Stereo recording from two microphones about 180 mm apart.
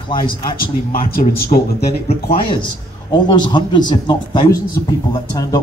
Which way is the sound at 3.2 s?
25° left (ahead or behind).